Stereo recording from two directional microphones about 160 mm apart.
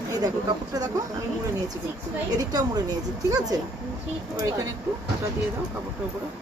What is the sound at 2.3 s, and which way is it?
A woman's voice, 25° right (ahead or behind).